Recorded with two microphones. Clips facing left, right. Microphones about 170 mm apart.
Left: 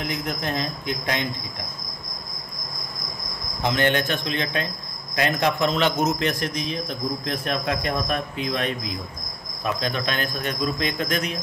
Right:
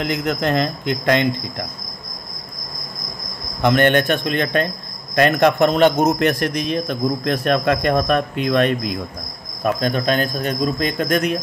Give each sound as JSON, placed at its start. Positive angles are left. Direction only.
{"t": 0.0, "sound": "speech", "side_deg": -75}
{"t": 3.6, "sound": "speech", "side_deg": -60}
{"t": 9.6, "sound": "speech", "side_deg": -50}